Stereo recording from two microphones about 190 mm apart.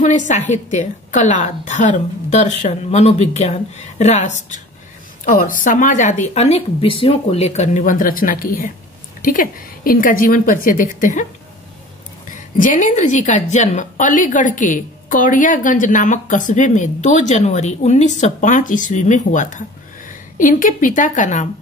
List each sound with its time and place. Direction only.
0.0 s a woman's voice: 40° left (ahead or behind)
12.5 s a woman's voice: 45° left (ahead or behind)